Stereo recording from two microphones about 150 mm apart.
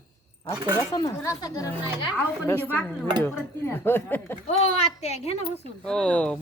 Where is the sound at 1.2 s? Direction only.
20° left (ahead or behind).